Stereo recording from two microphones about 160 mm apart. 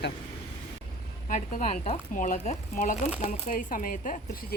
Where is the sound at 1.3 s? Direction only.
50° left (ahead or behind).